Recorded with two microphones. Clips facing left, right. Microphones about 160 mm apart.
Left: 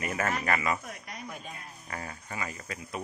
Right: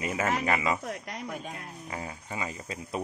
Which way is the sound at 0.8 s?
85° right.